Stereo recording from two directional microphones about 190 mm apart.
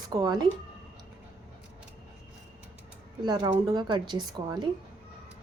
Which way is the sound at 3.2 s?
20° right (ahead or behind).